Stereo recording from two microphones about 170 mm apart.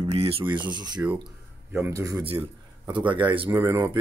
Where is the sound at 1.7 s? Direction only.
15° right (ahead or behind).